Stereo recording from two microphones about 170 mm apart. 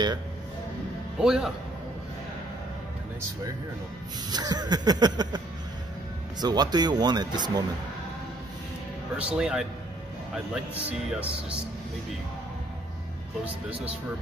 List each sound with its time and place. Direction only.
1.2 s speech: 5° right (ahead or behind)
4.3 s speech: 25° right (ahead or behind)
6.4 s speech: 25° right (ahead or behind)
9.1 s speech: 5° right (ahead or behind)